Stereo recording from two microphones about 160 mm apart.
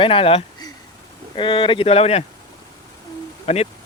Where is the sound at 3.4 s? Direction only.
40° left (ahead or behind).